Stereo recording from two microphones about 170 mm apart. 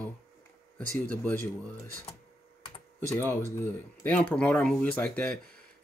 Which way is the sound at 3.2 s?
15° left (ahead or behind).